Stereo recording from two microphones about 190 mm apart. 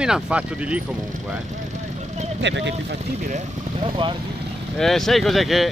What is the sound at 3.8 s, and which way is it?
Speech, 25° right (ahead or behind).